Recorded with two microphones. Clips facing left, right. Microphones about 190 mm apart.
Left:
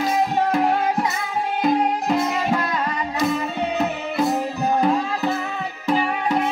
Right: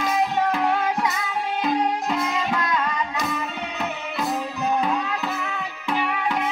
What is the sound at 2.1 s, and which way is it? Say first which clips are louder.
Music: left 4 dB; 30° left (ahead or behind).